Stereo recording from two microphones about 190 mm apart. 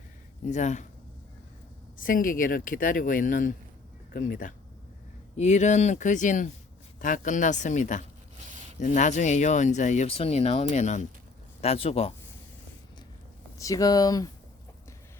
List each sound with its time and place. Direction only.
0.4 s speech: 40° left (ahead or behind)
2.0 s speech: 45° left (ahead or behind); by 12.1 s 30° left (ahead or behind)
13.6 s speech: 15° left (ahead or behind)